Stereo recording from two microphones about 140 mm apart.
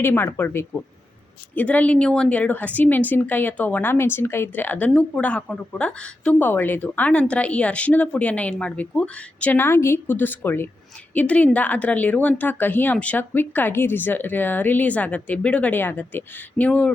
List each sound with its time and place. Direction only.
0.0 s speech: 15° left (ahead or behind)